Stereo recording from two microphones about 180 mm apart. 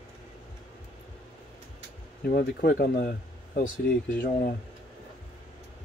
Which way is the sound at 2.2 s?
60° left (ahead or behind).